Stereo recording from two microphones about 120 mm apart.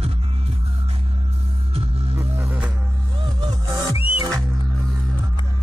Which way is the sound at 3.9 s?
50° left (ahead or behind).